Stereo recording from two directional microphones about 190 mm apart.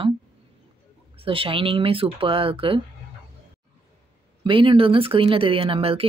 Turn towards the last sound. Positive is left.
turn(degrees=-30)  # may be behind; listen again after turning